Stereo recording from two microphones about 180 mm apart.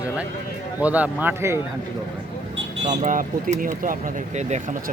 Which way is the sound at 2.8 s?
45° right (ahead or behind).